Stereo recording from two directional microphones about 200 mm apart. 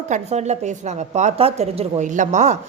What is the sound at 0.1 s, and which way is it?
Speech, 35° right (ahead or behind).